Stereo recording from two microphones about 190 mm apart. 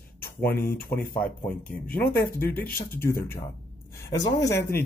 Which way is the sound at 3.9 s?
55° left (ahead or behind).